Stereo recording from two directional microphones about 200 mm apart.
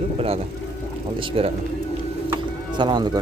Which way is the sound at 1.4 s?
30° right (ahead or behind).